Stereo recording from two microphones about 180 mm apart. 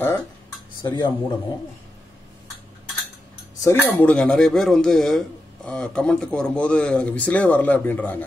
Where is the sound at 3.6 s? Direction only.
10° left (ahead or behind).